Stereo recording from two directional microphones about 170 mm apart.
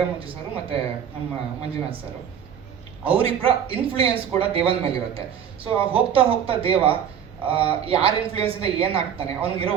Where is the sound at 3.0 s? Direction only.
35° right (ahead or behind).